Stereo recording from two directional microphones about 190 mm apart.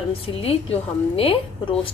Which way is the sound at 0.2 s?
30° left (ahead or behind).